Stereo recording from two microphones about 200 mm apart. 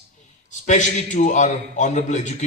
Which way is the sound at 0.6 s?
35° left (ahead or behind).